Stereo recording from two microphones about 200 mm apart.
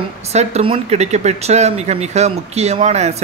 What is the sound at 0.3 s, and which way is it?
Speech, 35° right (ahead or behind).